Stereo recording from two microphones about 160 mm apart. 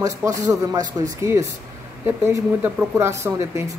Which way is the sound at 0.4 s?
20° right (ahead or behind).